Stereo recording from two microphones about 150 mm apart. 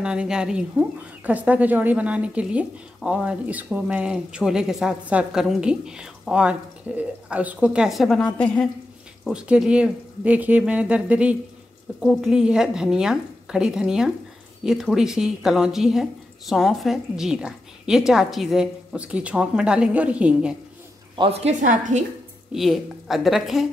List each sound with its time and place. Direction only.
0.0 s speech: 5° right (ahead or behind)
21.2 s a woman's voice: 40° right (ahead or behind)
21.6 s a woman's voice: 60° right (ahead or behind)
22.5 s speech: centre (ahead or behind)